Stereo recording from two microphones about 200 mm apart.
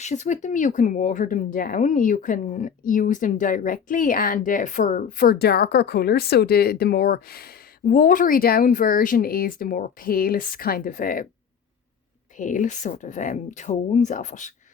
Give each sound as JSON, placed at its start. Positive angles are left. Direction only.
{"t": 0.0, "sound": "speech", "side_deg": 35}
{"t": 12.4, "sound": "speech", "side_deg": 40}